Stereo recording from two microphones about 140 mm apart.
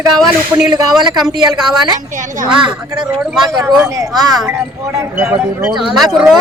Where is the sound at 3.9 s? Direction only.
25° right (ahead or behind).